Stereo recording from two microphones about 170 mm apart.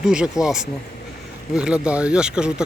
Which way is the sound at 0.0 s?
5° right (ahead or behind).